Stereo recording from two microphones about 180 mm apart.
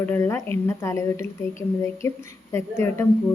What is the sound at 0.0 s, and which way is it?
Speech, 15° left (ahead or behind).